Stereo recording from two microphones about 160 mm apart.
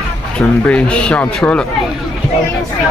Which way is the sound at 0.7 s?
5° left (ahead or behind).